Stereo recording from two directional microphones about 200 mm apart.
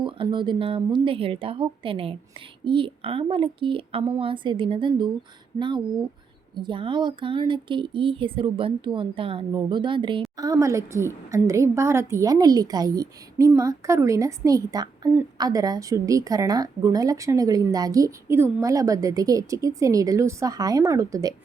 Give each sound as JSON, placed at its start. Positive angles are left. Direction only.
{"t": 0.0, "sound": "a woman's voice", "side_deg": -25}